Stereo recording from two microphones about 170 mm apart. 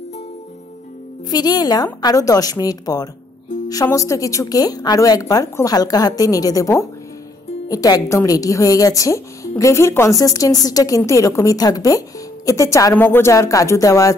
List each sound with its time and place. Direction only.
1.3 s a woman's voice: 25° left (ahead or behind)